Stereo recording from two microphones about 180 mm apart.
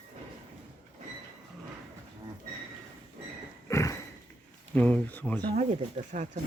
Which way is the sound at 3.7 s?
15° left (ahead or behind).